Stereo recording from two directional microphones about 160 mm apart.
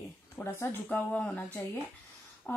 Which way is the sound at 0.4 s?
15° left (ahead or behind).